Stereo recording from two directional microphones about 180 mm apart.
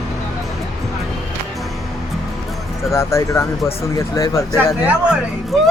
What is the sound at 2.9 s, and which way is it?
Speech, 15° left (ahead or behind).